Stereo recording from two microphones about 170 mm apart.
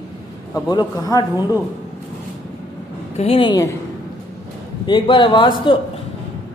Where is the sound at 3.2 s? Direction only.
30° left (ahead or behind).